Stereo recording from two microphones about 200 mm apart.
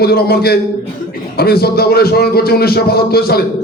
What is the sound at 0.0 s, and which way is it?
A man's voice, 50° left (ahead or behind).